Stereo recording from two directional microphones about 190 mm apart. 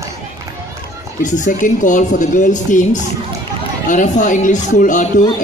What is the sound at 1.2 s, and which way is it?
Speech, 40° left (ahead or behind).